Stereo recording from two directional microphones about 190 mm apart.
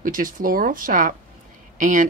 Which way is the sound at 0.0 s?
45° right (ahead or behind).